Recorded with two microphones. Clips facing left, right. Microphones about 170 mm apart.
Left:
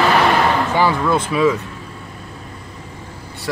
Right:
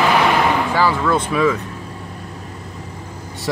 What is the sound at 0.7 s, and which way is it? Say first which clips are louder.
Speech: left 1 dB; 15° left (ahead or behind).